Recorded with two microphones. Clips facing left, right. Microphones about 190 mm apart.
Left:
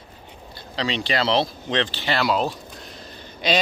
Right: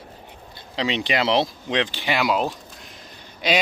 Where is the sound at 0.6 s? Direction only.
20° right (ahead or behind).